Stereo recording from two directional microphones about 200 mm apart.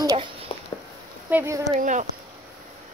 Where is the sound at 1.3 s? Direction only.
10° right (ahead or behind).